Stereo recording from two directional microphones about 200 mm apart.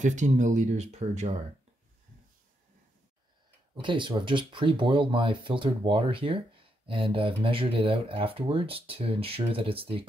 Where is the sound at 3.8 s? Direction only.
25° right (ahead or behind).